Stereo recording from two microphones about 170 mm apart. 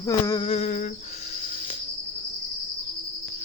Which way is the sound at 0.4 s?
40° left (ahead or behind).